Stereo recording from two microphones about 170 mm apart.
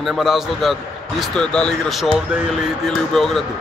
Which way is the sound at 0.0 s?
Centre (ahead or behind).